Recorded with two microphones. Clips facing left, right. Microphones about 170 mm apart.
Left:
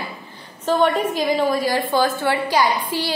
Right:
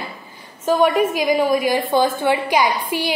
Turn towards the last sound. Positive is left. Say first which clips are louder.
# right 1 dB
turn(degrees=-15)  # may be behind; listen again after turning